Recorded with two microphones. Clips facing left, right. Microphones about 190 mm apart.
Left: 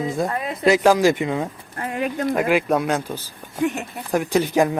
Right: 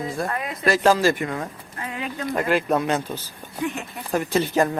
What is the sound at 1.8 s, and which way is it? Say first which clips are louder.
Speech: left 6 dB; 50° left (ahead or behind).